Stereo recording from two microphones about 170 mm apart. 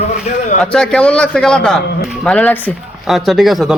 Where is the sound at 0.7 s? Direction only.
5° left (ahead or behind).